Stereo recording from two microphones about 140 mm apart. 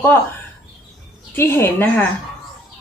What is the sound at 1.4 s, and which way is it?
Speech, 15° left (ahead or behind).